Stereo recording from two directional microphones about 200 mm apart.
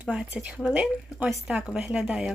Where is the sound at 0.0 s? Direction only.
5° right (ahead or behind).